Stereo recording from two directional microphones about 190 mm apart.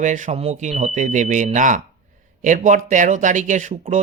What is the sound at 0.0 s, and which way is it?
Speech, 40° right (ahead or behind).